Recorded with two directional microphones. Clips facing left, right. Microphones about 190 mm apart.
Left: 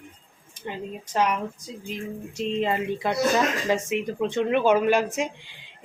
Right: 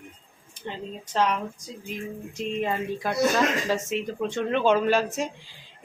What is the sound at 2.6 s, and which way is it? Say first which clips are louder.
Speech: left 2 dB; 20° left (ahead or behind).